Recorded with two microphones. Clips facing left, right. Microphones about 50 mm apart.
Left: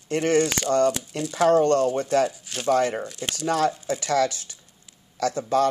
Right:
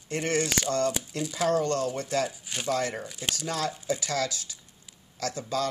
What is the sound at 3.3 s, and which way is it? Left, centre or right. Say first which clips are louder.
Speech: left 11 dB; left.